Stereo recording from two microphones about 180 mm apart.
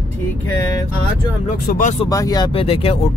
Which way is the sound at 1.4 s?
45° left (ahead or behind).